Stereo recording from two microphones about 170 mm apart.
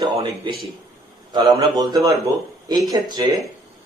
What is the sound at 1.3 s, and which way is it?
A man's voice, 25° right (ahead or behind).